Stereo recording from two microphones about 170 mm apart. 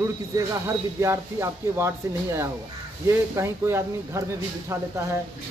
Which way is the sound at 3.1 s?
15° right (ahead or behind).